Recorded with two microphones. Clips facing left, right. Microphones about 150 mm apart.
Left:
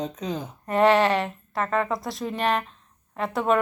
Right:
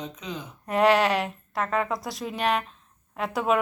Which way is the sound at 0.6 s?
Centre (ahead or behind).